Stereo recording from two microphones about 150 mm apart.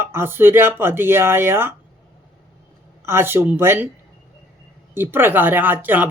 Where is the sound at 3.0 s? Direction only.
15° right (ahead or behind).